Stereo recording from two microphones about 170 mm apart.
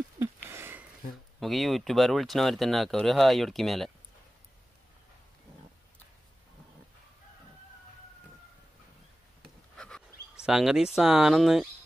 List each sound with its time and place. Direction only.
0.5 s a sound: 15° right (ahead or behind)
1.4 s speech: centre (ahead or behind)
9.8 s speech: 5° left (ahead or behind)